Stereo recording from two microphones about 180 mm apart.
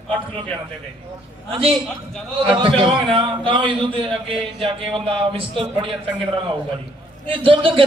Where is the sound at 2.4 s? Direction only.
30° right (ahead or behind).